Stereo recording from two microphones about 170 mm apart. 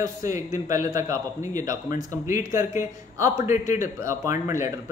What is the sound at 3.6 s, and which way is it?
Speech, 50° left (ahead or behind).